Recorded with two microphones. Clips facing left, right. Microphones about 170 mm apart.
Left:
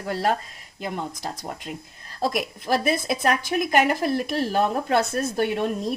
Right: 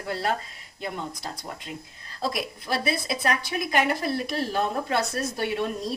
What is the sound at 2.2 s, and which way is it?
A woman's voice, 50° left (ahead or behind).